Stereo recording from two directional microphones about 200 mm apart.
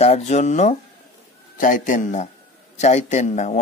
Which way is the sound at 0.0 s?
35° left (ahead or behind).